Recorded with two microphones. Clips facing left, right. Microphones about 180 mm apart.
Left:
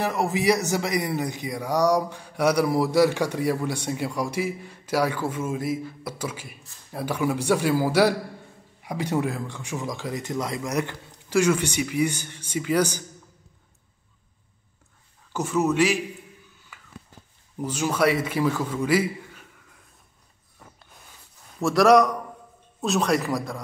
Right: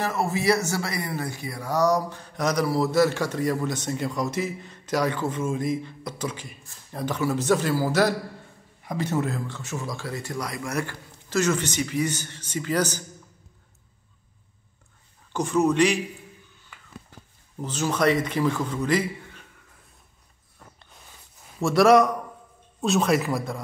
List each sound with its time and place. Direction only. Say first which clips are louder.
0.0 s a man's voice: left 1 dB; 15° left (ahead or behind)
15.3 s a man's voice: right 1 dB; 5° left (ahead or behind)
16.7 s a sound: even; 5° left (ahead or behind)
17.6 s a man's voice: left 1 dB; 10° left (ahead or behind)
20.5 s a sound: left 1 dB; 5° left (ahead or behind)
21.5 s a man's voice: even; centre (ahead or behind)